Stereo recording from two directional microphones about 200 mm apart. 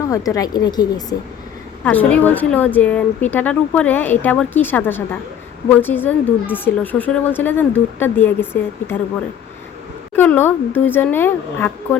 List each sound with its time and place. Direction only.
0.1 s speech: 15° left (ahead or behind)
1.8 s speech: 5° left (ahead or behind)
10.2 s speech: 10° left (ahead or behind)